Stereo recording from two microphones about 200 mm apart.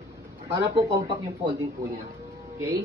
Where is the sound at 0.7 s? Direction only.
25° right (ahead or behind).